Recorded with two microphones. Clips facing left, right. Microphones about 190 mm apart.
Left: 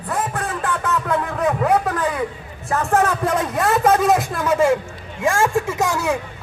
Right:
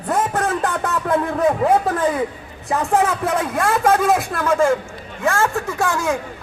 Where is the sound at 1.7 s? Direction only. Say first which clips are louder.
Right 2 dB; 25° right (ahead or behind).